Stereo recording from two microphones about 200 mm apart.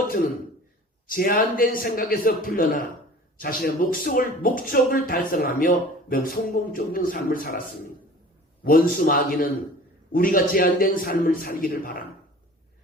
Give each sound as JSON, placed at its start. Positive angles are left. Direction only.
{"t": 1.0, "sound": "speech", "side_deg": 45}
{"t": 9.0, "sound": "speech", "side_deg": 45}